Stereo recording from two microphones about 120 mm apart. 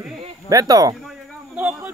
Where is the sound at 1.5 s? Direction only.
15° right (ahead or behind).